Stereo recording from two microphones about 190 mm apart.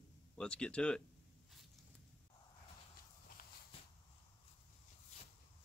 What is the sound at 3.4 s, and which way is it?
Walk, 50° left (ahead or behind).